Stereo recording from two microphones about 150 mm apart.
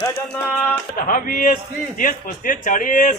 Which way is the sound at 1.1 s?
65° left (ahead or behind).